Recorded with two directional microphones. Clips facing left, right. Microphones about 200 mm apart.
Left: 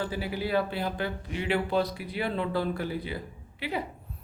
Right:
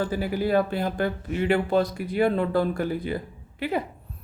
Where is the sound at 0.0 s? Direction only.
45° right (ahead or behind).